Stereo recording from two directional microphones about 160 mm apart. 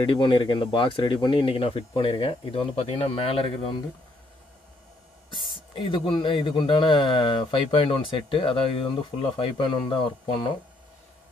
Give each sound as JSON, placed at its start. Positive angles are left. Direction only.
{"t": 0.0, "sound": "speech", "side_deg": 30}
{"t": 5.8, "sound": "speech", "side_deg": 30}